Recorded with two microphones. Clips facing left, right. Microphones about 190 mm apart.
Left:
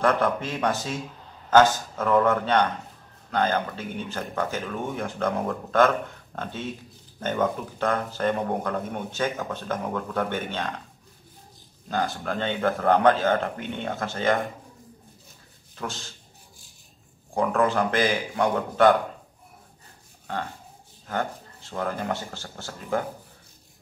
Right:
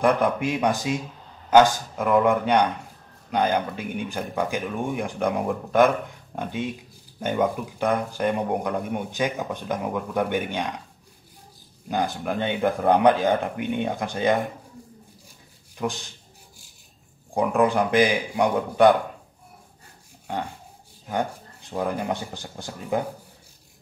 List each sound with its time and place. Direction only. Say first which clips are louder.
0.0 s a man's voice: right 2 dB; 15° right (ahead or behind)
11.9 s a man's voice: right 2 dB; 15° right (ahead or behind)
15.7 s a man's voice: right 6 dB; 15° right (ahead or behind)
17.3 s a man's voice: right 2 dB; 15° right (ahead or behind)
21.1 s a man's voice: right 2 dB; 15° right (ahead or behind)